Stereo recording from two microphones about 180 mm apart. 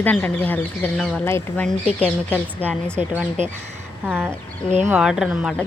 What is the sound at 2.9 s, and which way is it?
Speech, 10° right (ahead or behind).